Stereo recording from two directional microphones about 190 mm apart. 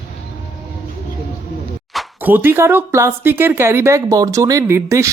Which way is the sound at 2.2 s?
10° right (ahead or behind).